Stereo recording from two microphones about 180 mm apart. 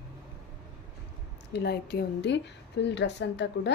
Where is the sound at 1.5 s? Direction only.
60° left (ahead or behind).